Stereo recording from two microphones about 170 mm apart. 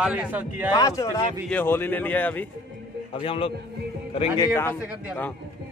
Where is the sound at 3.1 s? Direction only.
35° left (ahead or behind).